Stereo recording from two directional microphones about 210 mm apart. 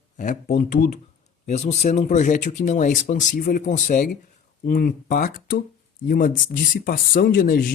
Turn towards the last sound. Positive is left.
turn(degrees=45)  # may be behind; listen again after turning